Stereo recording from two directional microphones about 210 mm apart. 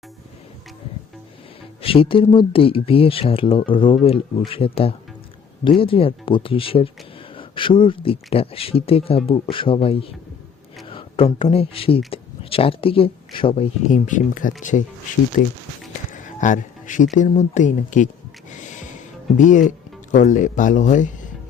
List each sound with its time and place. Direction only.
1.8 s speech: 25° left (ahead or behind)
13.9 s speech: 40° left (ahead or behind)
19.4 s speech: 35° left (ahead or behind)